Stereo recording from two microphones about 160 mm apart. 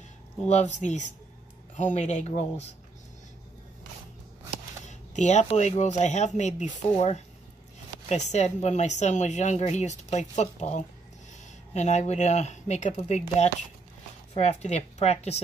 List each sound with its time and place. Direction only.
0.5 s speech: 45° left (ahead or behind)
4.8 s speech: 45° left (ahead or behind)